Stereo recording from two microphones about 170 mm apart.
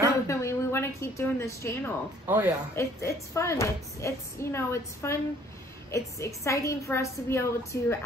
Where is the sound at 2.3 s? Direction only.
15° right (ahead or behind).